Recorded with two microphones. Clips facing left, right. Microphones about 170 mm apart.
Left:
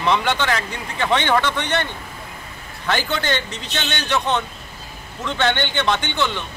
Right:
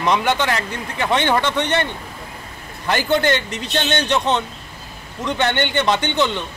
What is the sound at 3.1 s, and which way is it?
A man's voice, 15° right (ahead or behind).